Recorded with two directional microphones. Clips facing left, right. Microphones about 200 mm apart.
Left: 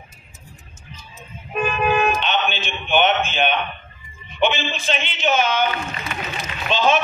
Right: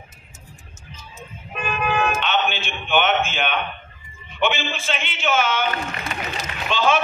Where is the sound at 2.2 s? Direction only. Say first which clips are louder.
Even; 20° left (ahead or behind).